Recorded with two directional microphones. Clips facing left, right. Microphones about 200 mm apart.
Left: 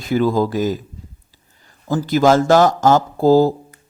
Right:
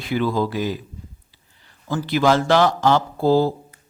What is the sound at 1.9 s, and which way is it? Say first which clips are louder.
Speech: left 4 dB; 40° left (ahead or behind).